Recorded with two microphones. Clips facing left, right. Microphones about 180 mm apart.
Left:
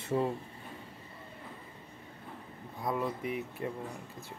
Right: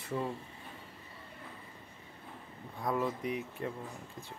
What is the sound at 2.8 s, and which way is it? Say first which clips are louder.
Speech: even; 5° left (ahead or behind).